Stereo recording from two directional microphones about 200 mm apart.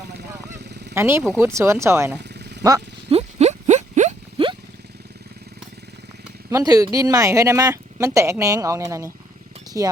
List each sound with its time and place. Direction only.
0.2 s vehicle: 55° right (ahead or behind)
0.9 s speech: 10° right (ahead or behind)
3.1 s a sound: 30° right (ahead or behind)
6.5 s speech: 15° right (ahead or behind)